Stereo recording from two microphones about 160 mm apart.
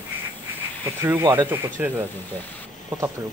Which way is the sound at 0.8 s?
15° right (ahead or behind).